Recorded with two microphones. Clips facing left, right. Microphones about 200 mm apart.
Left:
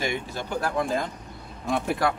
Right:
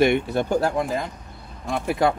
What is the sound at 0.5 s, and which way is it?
Speech, 25° right (ahead or behind).